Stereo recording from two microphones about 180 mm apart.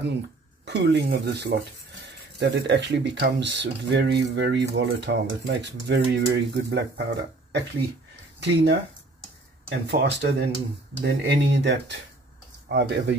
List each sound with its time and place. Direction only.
0.7 s speech: 70° right (ahead or behind)
9.8 s speech: 70° right (ahead or behind)